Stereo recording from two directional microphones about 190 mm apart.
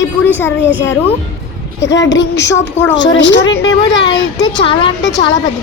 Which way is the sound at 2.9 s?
70° left (ahead or behind).